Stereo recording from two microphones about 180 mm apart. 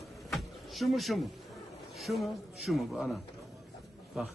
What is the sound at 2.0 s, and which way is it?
Speech, centre (ahead or behind).